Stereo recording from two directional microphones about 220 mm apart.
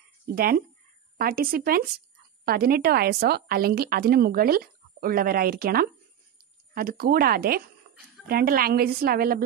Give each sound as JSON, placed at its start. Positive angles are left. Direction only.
{"t": 0.3, "sound": "a woman's voice", "side_deg": -45}